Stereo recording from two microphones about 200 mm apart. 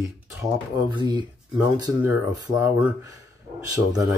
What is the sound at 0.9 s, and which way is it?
Speech, 20° right (ahead or behind).